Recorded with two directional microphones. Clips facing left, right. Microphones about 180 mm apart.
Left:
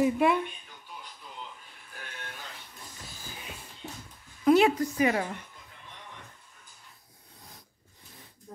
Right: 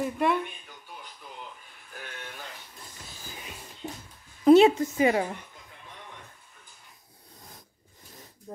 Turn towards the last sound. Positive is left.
turn(degrees=-45)  # may be behind; listen again after turning